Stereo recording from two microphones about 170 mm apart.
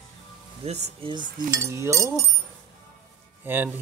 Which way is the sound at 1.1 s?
25° right (ahead or behind).